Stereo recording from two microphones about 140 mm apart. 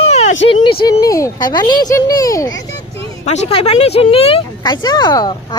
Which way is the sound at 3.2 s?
50° left (ahead or behind).